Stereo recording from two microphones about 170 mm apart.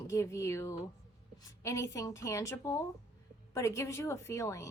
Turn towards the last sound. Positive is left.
turn(degrees=15)  # may be behind; listen again after turning